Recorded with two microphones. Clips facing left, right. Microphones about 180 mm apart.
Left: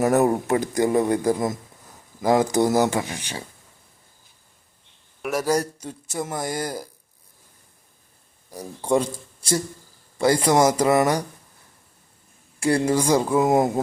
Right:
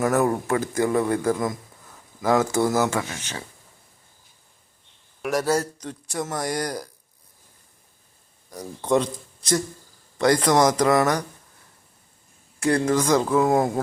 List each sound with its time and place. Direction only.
0.0 s speech: 20° left (ahead or behind)
5.2 s a man's voice: 5° left (ahead or behind)
8.4 s speech: 10° left (ahead or behind)
12.5 s speech: 10° left (ahead or behind)